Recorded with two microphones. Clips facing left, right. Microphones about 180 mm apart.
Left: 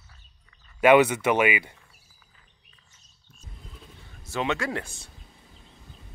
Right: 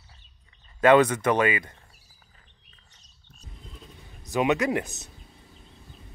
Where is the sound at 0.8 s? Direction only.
10° left (ahead or behind).